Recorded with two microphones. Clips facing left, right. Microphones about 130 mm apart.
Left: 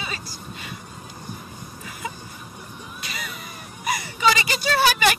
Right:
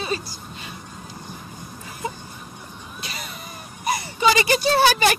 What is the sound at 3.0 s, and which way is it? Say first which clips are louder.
Vehicle: even; 30° right (ahead or behind).